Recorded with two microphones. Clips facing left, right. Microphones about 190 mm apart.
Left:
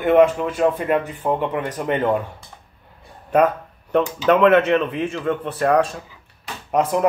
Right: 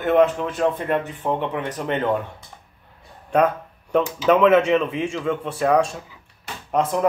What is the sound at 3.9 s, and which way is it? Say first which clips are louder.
A man's voice: left 1 dB; centre (ahead or behind).